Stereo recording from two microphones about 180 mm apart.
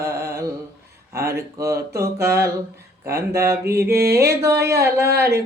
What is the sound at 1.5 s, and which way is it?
Speech, 15° right (ahead or behind).